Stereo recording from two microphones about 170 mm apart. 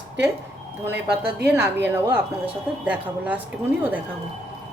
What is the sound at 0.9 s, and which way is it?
Speech, 85° right.